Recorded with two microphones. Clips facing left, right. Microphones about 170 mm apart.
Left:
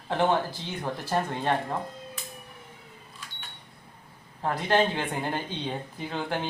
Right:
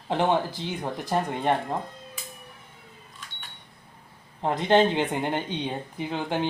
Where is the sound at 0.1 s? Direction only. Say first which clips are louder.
Right 1 dB; 15° right (ahead or behind).